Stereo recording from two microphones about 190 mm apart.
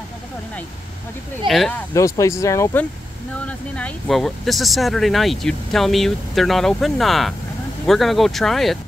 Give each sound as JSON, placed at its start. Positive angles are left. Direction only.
{"t": 1.5, "sound": "speech", "side_deg": 0}
{"t": 2.0, "sound": "speech", "side_deg": 15}